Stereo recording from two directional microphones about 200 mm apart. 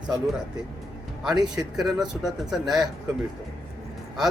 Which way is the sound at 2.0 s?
Centre (ahead or behind).